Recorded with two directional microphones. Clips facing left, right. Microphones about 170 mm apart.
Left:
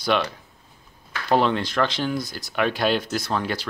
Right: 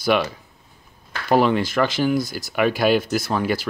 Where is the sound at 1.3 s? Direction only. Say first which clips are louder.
Right 3 dB; 5° right (ahead or behind).